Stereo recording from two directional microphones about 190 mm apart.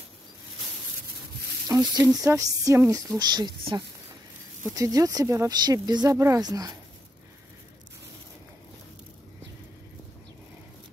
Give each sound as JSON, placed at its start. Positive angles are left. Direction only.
{"t": 1.7, "sound": "speech", "side_deg": -20}